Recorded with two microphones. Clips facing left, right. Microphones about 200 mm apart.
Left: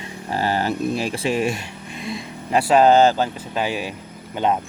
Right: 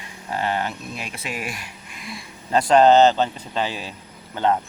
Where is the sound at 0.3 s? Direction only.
35° left (ahead or behind).